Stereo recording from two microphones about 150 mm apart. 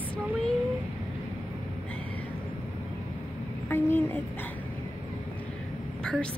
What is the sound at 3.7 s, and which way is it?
Speech, 15° left (ahead or behind).